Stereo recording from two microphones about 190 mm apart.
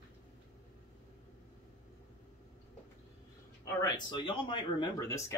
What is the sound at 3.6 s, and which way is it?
Speech, 25° left (ahead or behind).